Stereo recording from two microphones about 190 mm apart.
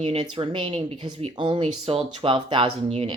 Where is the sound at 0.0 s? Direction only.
30° right (ahead or behind).